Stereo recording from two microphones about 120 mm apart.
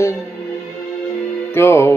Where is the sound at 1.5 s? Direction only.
20° left (ahead or behind).